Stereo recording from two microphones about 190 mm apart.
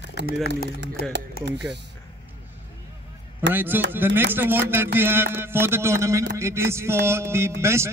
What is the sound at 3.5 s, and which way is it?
A man's voice, 10° right (ahead or behind).